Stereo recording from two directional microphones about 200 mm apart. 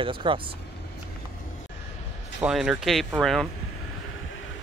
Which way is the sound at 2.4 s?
5° right (ahead or behind).